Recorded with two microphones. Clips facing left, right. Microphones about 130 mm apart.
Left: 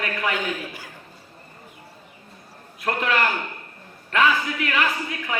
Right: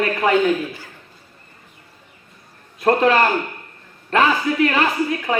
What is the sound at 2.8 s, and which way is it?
A man's voice, 35° right (ahead or behind).